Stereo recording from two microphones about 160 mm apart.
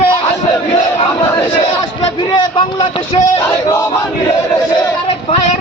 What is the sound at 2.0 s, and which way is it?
A man's voice, 30° left (ahead or behind).